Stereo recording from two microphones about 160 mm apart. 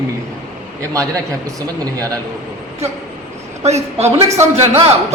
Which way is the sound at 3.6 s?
40° right (ahead or behind).